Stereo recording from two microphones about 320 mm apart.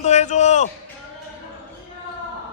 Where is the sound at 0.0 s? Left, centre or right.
Left.